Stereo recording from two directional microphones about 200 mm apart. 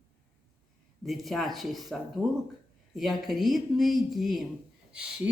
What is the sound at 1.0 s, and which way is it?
Speech, centre (ahead or behind).